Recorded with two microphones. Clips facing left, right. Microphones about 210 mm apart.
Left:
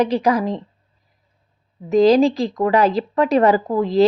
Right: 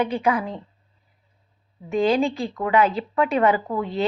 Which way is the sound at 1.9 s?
40° left (ahead or behind).